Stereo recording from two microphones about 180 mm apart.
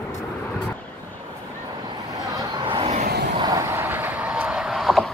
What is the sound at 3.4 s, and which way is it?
Vehicle, 20° right (ahead or behind).